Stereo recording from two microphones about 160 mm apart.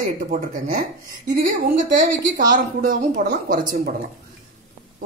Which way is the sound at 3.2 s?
90° right.